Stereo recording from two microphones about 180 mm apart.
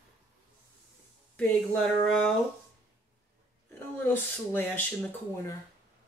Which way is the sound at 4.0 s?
10° left (ahead or behind).